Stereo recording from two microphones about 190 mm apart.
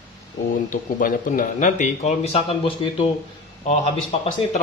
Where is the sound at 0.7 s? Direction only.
45° left (ahead or behind); by 3.1 s 30° left (ahead or behind).